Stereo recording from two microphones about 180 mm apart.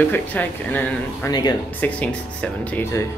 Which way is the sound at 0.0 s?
10° left (ahead or behind).